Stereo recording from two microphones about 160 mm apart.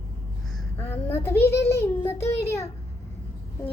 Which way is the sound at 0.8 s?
15° left (ahead or behind).